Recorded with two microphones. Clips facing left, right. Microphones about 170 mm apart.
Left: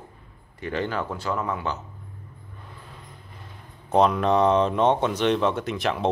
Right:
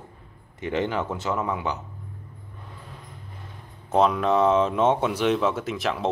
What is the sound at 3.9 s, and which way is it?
Speech, centre (ahead or behind).